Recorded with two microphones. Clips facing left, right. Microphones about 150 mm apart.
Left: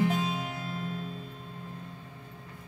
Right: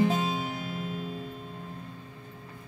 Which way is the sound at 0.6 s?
15° right (ahead or behind).